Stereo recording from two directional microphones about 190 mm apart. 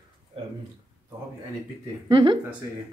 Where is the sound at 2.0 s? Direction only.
25° right (ahead or behind).